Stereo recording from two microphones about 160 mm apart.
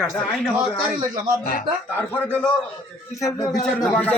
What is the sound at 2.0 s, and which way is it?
Speech, 10° left (ahead or behind).